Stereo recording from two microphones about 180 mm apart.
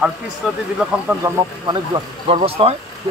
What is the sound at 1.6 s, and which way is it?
Speech, 30° right (ahead or behind).